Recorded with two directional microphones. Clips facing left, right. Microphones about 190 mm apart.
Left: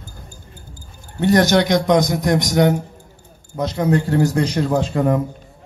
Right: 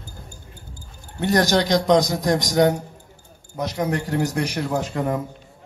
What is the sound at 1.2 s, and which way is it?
A man's voice, 20° left (ahead or behind).